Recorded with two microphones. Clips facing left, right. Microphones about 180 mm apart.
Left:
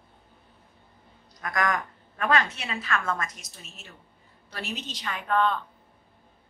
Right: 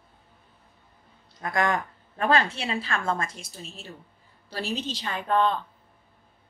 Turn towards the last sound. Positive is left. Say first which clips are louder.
# right 2 dB
turn(degrees=-30)  # may be behind; listen again after turning